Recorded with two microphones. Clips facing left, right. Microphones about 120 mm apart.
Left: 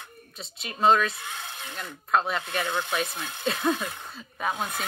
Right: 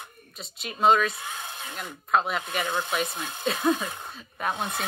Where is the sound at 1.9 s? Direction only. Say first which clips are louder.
Even; centre (ahead or behind); by 3.4 s 20° right (ahead or behind).